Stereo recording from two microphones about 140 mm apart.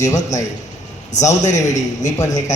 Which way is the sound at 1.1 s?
55° left (ahead or behind).